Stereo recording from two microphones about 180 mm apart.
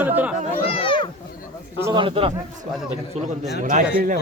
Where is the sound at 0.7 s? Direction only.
30° left (ahead or behind).